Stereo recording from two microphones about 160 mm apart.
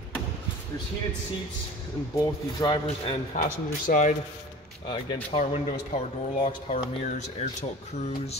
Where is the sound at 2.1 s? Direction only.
25° left (ahead or behind).